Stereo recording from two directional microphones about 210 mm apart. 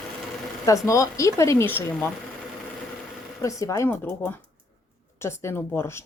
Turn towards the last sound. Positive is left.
turn(degrees=10)  # may be behind; listen again after turning